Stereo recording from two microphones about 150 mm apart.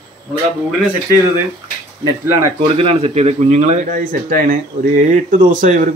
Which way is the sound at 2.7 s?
40° right (ahead or behind).